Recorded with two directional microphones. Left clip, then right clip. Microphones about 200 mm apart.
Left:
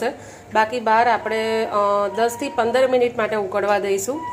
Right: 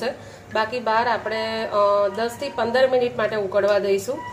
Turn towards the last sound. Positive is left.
turn(degrees=20)  # may be behind; listen again after turning